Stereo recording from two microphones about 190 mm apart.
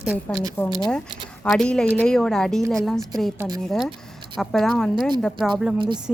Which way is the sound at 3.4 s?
20° right (ahead or behind).